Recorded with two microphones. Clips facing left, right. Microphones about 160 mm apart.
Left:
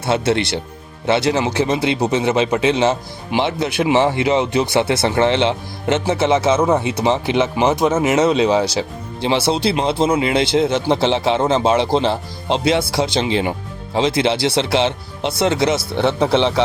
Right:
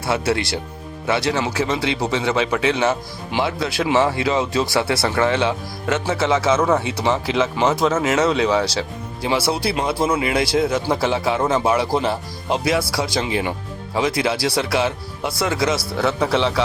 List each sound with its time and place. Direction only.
0.0 s speech: 25° left (ahead or behind)